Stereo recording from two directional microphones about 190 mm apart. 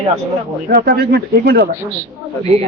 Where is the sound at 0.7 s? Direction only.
55° right (ahead or behind).